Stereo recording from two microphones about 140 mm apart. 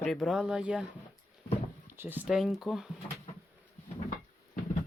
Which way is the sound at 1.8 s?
15° right (ahead or behind).